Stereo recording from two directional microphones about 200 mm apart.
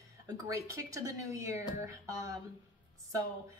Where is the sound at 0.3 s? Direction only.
15° right (ahead or behind).